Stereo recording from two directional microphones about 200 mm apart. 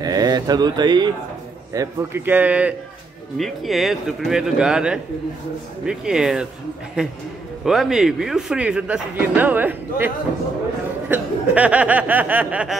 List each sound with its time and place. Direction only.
0.0 s speech: 20° right (ahead or behind)
1.7 s chuckle: 15° right (ahead or behind)
3.3 s speech: centre (ahead or behind)
11.1 s chuckle: 5° right (ahead or behind)